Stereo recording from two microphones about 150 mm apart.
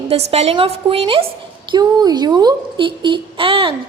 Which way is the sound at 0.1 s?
45° right (ahead or behind).